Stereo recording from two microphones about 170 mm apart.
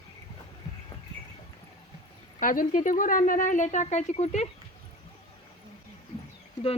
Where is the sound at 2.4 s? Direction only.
55° left (ahead or behind).